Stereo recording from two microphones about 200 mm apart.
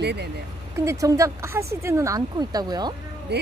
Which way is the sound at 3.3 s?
55° right (ahead or behind).